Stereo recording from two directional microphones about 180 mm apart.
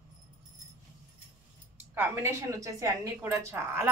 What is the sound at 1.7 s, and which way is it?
A woman's voice, 10° right (ahead or behind).